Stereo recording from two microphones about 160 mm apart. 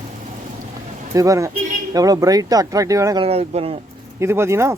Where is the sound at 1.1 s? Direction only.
20° right (ahead or behind).